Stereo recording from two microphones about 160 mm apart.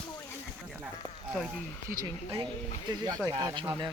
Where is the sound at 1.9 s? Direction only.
20° right (ahead or behind).